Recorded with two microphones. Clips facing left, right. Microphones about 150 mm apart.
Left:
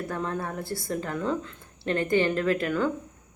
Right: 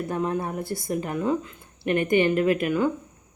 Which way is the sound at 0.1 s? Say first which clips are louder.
Right 6 dB; 20° right (ahead or behind).